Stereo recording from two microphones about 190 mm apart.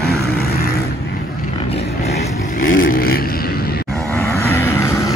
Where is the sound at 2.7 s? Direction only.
50° left (ahead or behind).